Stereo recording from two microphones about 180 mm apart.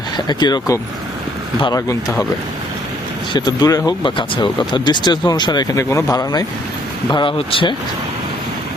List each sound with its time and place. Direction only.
0.3 s speech: 25° left (ahead or behind)
3.3 s speech: 20° left (ahead or behind)